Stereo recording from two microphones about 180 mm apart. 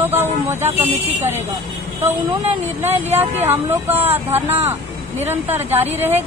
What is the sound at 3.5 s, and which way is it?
Speech, 10° right (ahead or behind).